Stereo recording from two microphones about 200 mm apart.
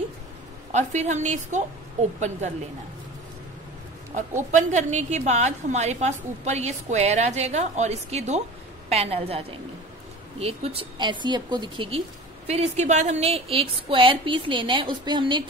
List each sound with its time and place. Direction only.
0.7 s a woman's voice: 35° right (ahead or behind)
4.5 s a woman's voice: 35° right (ahead or behind)